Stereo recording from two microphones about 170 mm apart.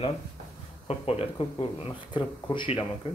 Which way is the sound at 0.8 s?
35° left (ahead or behind).